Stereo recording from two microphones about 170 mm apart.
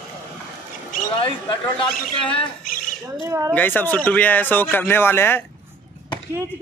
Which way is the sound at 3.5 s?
10° left (ahead or behind).